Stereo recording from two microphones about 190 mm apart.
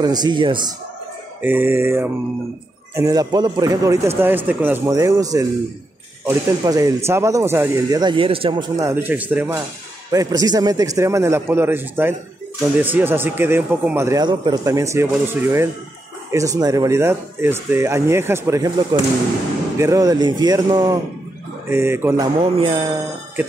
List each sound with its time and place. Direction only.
0.0 s speech: 20° right (ahead or behind)
1.4 s speech: 10° right (ahead or behind)
10.1 s speech: 20° right (ahead or behind)